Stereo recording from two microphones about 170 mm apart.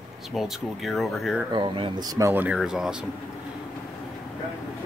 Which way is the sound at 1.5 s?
30° right (ahead or behind).